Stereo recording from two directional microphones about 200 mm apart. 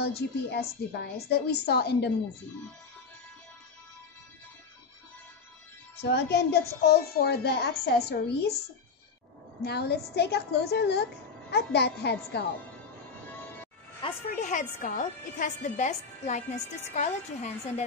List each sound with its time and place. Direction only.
0.0 s a woman's voice: 55° left (ahead or behind)
5.9 s a woman's voice: 55° left (ahead or behind)
9.7 s a woman's voice: 55° left (ahead or behind)
14.3 s a woman's voice: 40° left (ahead or behind)